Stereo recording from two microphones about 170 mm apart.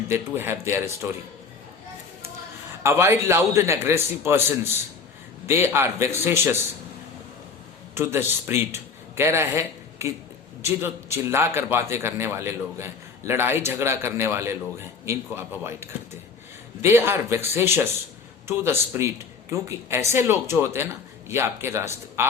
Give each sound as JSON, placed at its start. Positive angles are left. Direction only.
{"t": 0.1, "sound": "a man's voice", "side_deg": -15}
{"t": 2.8, "sound": "a man's voice", "side_deg": -15}
{"t": 7.9, "sound": "a man's voice", "side_deg": -15}